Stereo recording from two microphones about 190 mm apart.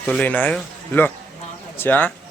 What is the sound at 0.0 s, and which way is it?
Speech, 5° left (ahead or behind).